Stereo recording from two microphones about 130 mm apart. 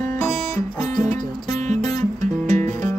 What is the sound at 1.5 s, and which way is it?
Music, 65° right (ahead or behind).